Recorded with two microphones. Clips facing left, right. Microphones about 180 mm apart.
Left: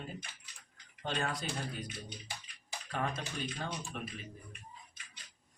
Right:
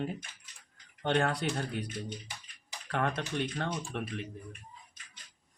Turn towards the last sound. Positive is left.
turn(degrees=-70)  # may be behind; listen again after turning